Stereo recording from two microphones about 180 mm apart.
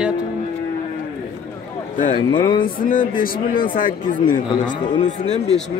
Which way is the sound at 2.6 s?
50° left (ahead or behind).